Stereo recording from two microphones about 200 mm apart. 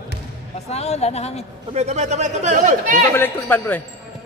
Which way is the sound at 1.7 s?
35° right (ahead or behind).